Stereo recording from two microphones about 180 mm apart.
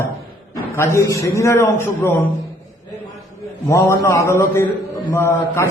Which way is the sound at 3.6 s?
15° left (ahead or behind).